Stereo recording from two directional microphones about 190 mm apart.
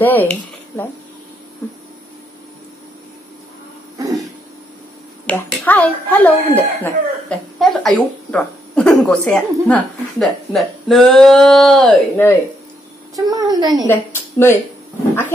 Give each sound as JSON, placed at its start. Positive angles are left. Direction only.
{"t": 0.0, "sound": "speech", "side_deg": 10}
{"t": 4.0, "sound": "a sound", "side_deg": -20}
{"t": 5.2, "sound": "a child's voice", "side_deg": 10}
{"t": 13.1, "sound": "a woman's voice", "side_deg": -20}
{"t": 13.8, "sound": "a woman's voice", "side_deg": 10}